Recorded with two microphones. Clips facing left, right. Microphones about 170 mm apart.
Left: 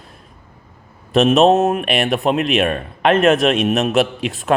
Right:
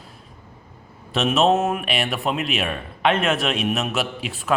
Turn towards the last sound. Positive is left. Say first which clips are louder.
# left 5 dB
turn(degrees=45)  # may be behind; listen again after turning